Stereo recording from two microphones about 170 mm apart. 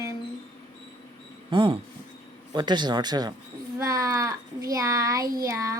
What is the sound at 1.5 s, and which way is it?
A child's voice, 30° right (ahead or behind).